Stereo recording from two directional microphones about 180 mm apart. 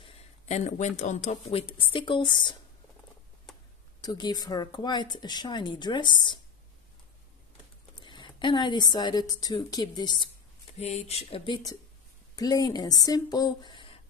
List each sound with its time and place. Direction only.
0.0 s speech: 35° left (ahead or behind)
4.0 s speech: 20° left (ahead or behind)
8.0 s a woman's voice: 25° left (ahead or behind)
10.8 s speech: 35° left (ahead or behind)